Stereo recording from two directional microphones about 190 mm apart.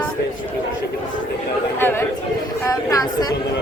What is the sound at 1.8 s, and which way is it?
Chatter, 10° left (ahead or behind).